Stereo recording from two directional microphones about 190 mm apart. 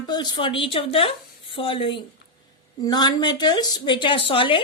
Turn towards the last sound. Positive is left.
turn(degrees=25)  # may be behind; listen again after turning